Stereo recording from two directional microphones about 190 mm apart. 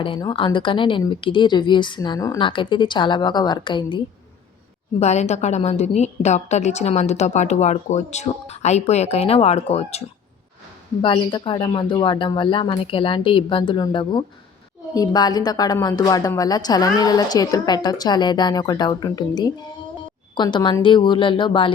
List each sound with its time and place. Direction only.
0.0 s a woman's voice: 25° left (ahead or behind)
4.9 s a woman's voice: 35° left (ahead or behind)
11.0 s a woman's voice: 25° left (ahead or behind)